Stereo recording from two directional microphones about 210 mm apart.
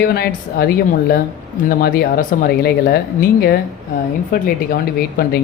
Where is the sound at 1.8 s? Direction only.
45° left (ahead or behind).